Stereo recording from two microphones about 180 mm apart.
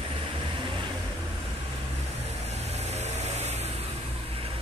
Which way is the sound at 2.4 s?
35° right (ahead or behind).